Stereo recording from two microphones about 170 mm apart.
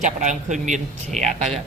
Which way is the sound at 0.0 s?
45° right (ahead or behind).